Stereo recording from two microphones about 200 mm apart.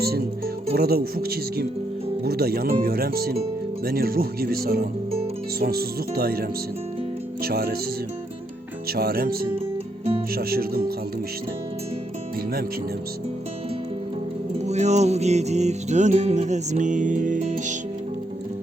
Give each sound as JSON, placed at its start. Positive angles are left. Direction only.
{"t": 0.0, "sound": "speech", "side_deg": -50}
{"t": 7.4, "sound": "speech", "side_deg": -50}
{"t": 8.9, "sound": "speech", "side_deg": -50}
{"t": 14.6, "sound": "music", "side_deg": -35}